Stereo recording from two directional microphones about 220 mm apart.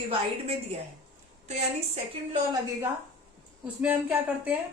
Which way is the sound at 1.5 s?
30° right (ahead or behind).